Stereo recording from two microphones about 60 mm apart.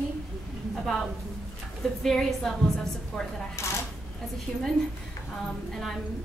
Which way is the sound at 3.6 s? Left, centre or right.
Left.